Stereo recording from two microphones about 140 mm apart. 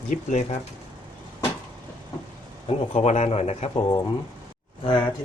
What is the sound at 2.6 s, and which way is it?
Speech, 50° left (ahead or behind).